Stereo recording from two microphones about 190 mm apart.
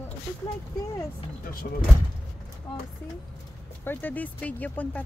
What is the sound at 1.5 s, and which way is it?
Speech, 50° left (ahead or behind).